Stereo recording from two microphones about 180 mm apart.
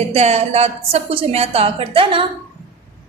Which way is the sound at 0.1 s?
35° right (ahead or behind).